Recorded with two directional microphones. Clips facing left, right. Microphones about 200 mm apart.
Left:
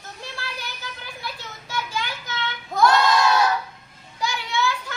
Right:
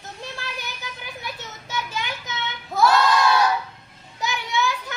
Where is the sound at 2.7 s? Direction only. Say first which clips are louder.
Even; 5° right (ahead or behind).